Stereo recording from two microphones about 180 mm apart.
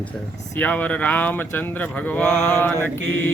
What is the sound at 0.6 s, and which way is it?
Speech, 10° left (ahead or behind).